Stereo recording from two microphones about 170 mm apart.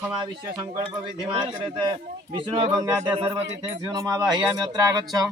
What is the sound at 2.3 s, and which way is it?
Speech, 30° right (ahead or behind).